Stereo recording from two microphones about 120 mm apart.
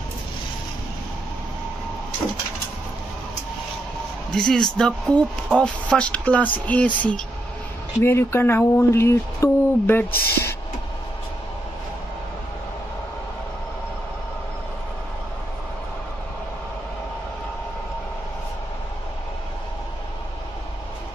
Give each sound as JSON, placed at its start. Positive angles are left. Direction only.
{"t": 4.3, "sound": "speech", "side_deg": 5}
{"t": 8.0, "sound": "speech", "side_deg": 20}